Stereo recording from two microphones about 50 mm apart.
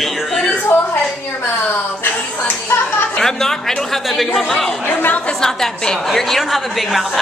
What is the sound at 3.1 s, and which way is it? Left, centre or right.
Speech, centre.